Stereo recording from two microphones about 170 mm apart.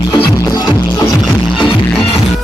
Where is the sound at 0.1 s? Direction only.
25° left (ahead or behind).